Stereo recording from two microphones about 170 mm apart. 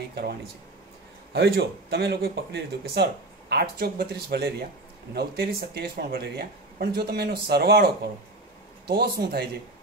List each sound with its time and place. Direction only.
1.3 s speech: 80° right